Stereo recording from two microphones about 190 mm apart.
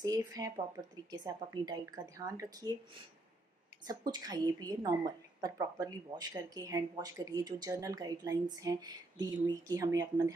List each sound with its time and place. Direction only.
0.0 s a woman's voice: 20° right (ahead or behind)
3.8 s a woman's voice: 20° right (ahead or behind)